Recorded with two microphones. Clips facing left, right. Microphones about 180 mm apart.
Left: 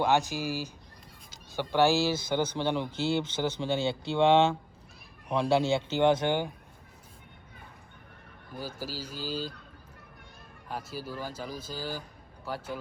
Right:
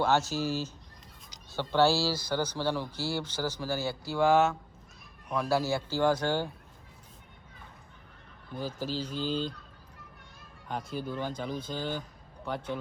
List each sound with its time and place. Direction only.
0.0 s speech: 15° left (ahead or behind)
8.5 s speech: 10° left (ahead or behind)
10.7 s speech: 5° left (ahead or behind)